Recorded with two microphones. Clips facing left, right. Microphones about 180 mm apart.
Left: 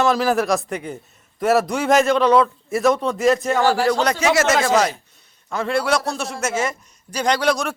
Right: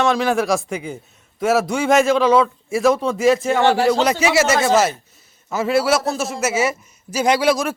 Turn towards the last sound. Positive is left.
turn(degrees=-5)  # may be behind; listen again after turning